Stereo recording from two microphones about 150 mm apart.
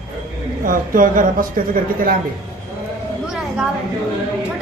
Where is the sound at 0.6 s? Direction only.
65° right (ahead or behind).